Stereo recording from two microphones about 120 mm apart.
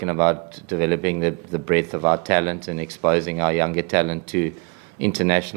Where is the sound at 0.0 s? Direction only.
25° right (ahead or behind).